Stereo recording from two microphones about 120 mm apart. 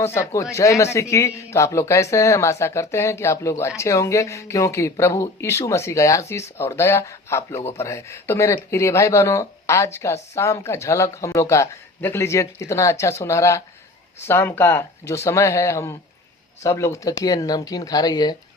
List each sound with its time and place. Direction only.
0.0 s speech: 20° left (ahead or behind)